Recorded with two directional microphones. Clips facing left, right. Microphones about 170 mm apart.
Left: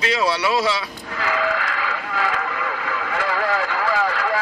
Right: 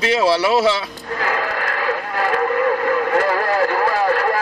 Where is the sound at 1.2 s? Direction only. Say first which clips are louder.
Even; 45° right (ahead or behind).